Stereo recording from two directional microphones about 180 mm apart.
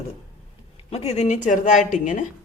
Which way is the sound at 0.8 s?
35° left (ahead or behind).